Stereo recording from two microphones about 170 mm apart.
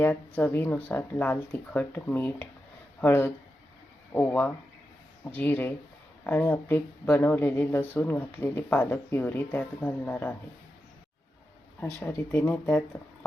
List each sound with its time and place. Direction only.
0.0 s speech: 10° left (ahead or behind)
11.9 s speech: 15° left (ahead or behind)